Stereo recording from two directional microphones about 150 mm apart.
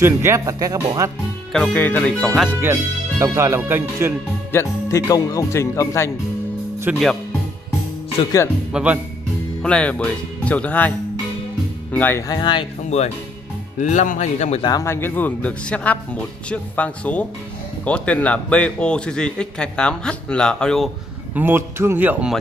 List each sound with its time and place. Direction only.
0.0 s speech: 15° right (ahead or behind)
1.5 s a man's voice: 5° left (ahead or behind)
2.6 s speech: 15° right (ahead or behind)
4.5 s a man's voice: 15° left (ahead or behind)
6.9 s speech: 10° right (ahead or behind)
8.7 s speech: 10° right (ahead or behind)
9.6 s a man's voice: 5° left (ahead or behind)
12.3 s speech: 30° left (ahead or behind)
13.7 s speech: 55° left (ahead or behind)
14.7 s a man's voice: 20° left (ahead or behind); by 20.9 s 5° left (ahead or behind)
21.4 s speech: 15° right (ahead or behind)